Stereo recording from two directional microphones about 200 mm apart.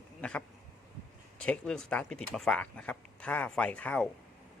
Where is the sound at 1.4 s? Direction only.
5° left (ahead or behind).